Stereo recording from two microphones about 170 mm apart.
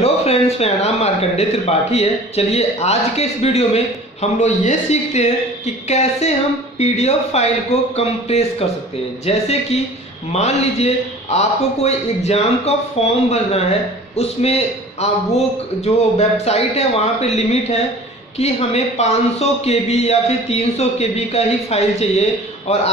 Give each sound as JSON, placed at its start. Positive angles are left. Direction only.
{"t": 0.0, "sound": "speech", "side_deg": 35}